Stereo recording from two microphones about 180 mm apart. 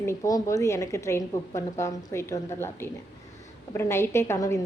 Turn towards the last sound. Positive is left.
turn(degrees=15)  # may be behind; listen again after turning